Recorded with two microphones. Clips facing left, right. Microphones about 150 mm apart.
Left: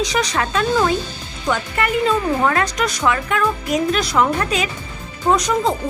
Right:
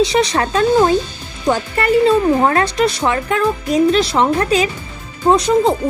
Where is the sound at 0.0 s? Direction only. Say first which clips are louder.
Right 5 dB; 30° right (ahead or behind).